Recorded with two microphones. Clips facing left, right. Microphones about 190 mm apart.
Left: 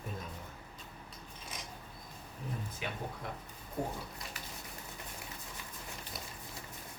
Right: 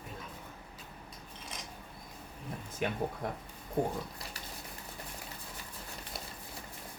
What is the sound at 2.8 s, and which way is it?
Speech, 50° right (ahead or behind).